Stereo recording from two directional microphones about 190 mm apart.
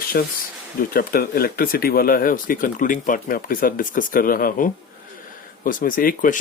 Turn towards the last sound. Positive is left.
turn(degrees=50)  # may be behind; listen again after turning